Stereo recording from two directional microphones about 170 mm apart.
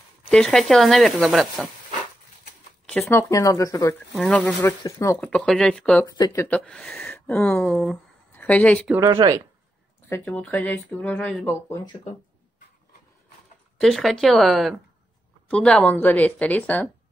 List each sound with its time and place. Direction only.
0.3 s speech: 5° left (ahead or behind)
3.1 s speech: 15° left (ahead or behind)
4.2 s speech: 5° left (ahead or behind)
4.6 s speech: 15° left (ahead or behind)
6.0 s speech: 20° left (ahead or behind); by 8.9 s 5° left (ahead or behind)
9.0 s speech: 20° right (ahead or behind)
10.0 s speech: 10° left (ahead or behind)
11.7 s speech: 25° left (ahead or behind)
13.7 s speech: centre (ahead or behind)